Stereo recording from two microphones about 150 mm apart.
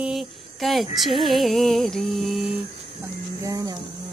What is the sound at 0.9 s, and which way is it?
Music, centre (ahead or behind).